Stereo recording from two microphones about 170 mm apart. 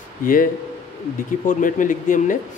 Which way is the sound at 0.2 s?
55° left (ahead or behind).